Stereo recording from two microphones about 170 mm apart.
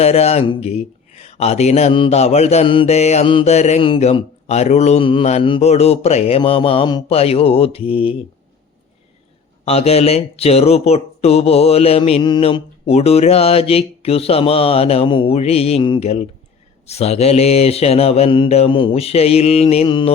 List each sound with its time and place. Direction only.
0.0 s speech: 35° left (ahead or behind)
9.6 s speech: 35° left (ahead or behind)